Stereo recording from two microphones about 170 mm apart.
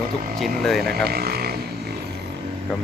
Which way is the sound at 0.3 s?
Centre (ahead or behind).